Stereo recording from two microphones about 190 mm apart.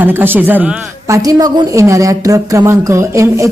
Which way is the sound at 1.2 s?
20° right (ahead or behind).